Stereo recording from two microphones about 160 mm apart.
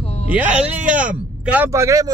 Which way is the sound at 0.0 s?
40° left (ahead or behind).